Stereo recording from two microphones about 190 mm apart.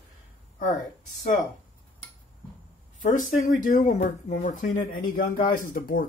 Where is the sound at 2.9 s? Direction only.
40° left (ahead or behind).